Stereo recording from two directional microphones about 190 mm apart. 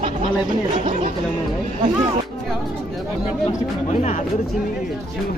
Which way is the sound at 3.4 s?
35° left (ahead or behind).